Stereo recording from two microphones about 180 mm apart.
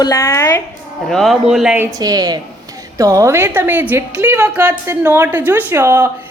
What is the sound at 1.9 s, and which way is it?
A woman's voice, 20° right (ahead or behind).